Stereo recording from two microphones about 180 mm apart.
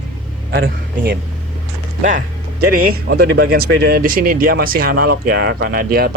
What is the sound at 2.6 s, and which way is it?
Speech, 55° right (ahead or behind).